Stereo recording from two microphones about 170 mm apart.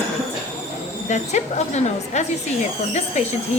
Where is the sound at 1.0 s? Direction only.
45° left (ahead or behind).